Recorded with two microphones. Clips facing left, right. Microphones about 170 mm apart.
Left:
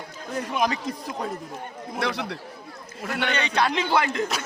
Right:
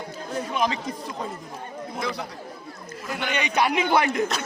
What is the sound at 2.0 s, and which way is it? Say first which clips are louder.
Speech: left 4 dB; 75° left (ahead or behind).